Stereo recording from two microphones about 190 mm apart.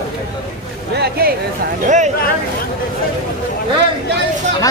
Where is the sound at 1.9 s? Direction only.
40° right (ahead or behind).